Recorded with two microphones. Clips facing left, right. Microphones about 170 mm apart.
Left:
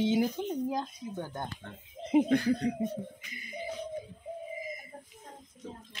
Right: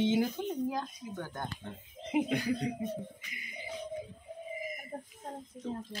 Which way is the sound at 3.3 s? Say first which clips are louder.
Left 4 dB; 35° left (ahead or behind).